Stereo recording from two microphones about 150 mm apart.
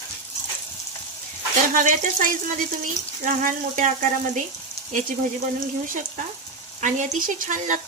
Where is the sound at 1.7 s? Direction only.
65° right (ahead or behind).